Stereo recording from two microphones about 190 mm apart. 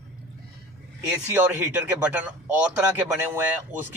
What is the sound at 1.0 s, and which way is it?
A man's voice, 10° right (ahead or behind).